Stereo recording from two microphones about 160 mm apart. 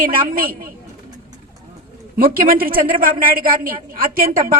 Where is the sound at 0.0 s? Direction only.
60° right (ahead or behind).